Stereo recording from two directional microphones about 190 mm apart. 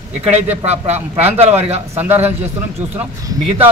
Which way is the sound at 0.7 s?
35° right (ahead or behind).